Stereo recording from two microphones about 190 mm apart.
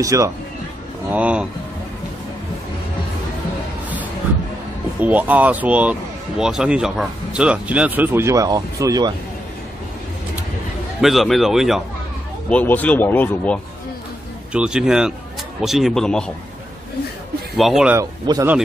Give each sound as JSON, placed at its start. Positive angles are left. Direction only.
{"t": 0.0, "sound": "speech", "side_deg": -15}
{"t": 5.0, "sound": "speech", "side_deg": -10}
{"t": 11.0, "sound": "a man's voice", "side_deg": 0}
{"t": 14.5, "sound": "a man's voice", "side_deg": -5}
{"t": 17.6, "sound": "a man's voice", "side_deg": 0}
{"t": 17.9, "sound": "speech", "side_deg": -15}